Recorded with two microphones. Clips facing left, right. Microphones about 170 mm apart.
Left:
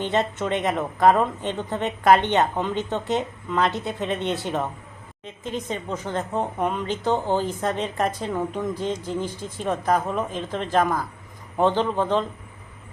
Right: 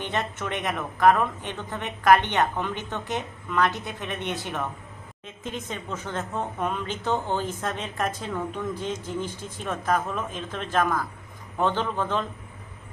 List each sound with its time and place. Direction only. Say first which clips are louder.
0.1 s a woman's voice: left 6 dB; 20° left (ahead or behind)
4.2 s speech: left 5 dB; 15° right (ahead or behind)
4.4 s a woman's voice: left 5 dB; 20° left (ahead or behind)